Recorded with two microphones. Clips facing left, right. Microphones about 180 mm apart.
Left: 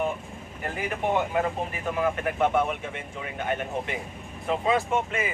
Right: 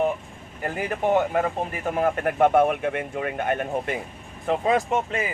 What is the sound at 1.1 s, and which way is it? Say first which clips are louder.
Speech: right 4 dB; 50° right (ahead or behind).